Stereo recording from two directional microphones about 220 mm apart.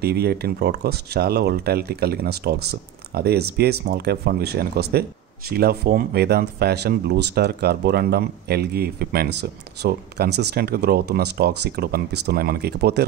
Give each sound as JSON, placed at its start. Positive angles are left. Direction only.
{"t": 0.0, "sound": "speech", "side_deg": -45}